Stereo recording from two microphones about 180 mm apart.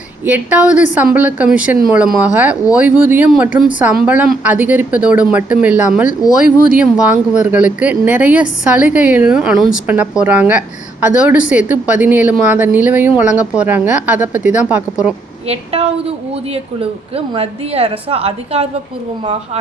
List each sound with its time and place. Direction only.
0.3 s speech: 10° right (ahead or behind)
15.4 s a woman's voice: 35° right (ahead or behind)